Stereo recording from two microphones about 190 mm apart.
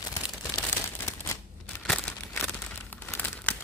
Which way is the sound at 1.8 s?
5° left (ahead or behind).